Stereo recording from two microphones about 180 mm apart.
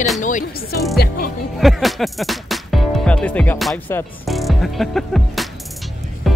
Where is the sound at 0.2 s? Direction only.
45° left (ahead or behind).